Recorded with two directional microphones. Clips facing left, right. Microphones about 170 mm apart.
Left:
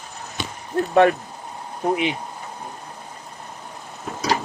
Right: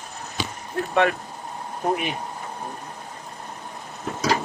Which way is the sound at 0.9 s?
40° left (ahead or behind).